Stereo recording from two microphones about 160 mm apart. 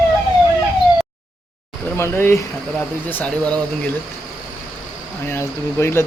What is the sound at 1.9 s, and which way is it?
Speech, 15° left (ahead or behind).